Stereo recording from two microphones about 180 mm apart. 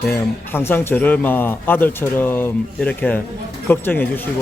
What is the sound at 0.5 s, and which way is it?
A man's voice, 15° left (ahead or behind).